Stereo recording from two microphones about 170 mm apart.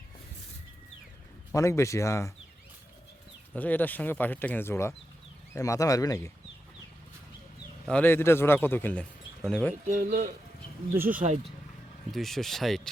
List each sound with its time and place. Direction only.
1.5 s speech: 15° left (ahead or behind)
3.5 s speech: 10° left (ahead or behind)
7.9 s speech: 10° left (ahead or behind)
9.8 s speech: 55° right (ahead or behind)
10.8 s speech: 10° right (ahead or behind)
12.1 s speech: centre (ahead or behind)